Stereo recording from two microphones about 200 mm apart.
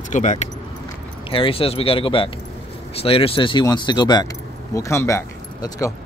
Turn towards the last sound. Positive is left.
turn(degrees=15)  # may be behind; listen again after turning